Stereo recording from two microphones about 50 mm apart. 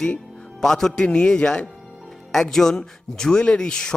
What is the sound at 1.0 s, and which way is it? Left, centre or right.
Speech, centre.